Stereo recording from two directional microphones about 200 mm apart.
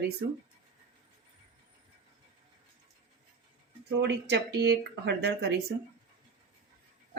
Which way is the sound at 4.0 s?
60° right (ahead or behind).